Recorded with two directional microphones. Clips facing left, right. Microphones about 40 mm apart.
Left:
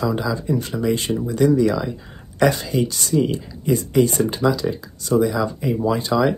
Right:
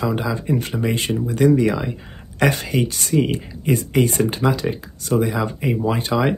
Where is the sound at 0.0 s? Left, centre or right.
Right.